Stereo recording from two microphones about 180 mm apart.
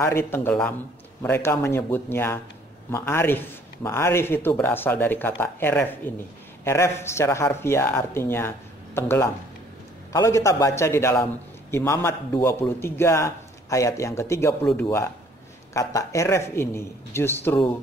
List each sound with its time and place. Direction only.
0.0 s speech: 15° left (ahead or behind)